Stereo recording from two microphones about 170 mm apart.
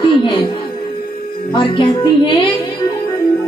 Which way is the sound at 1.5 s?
30° left (ahead or behind).